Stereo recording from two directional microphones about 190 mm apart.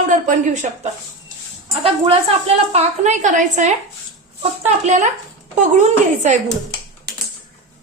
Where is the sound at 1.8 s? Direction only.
30° right (ahead or behind).